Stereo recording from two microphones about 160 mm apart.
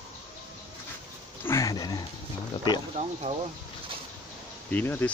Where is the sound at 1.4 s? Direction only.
15° left (ahead or behind).